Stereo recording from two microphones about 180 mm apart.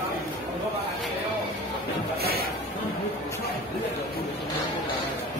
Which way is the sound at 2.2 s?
60° right (ahead or behind).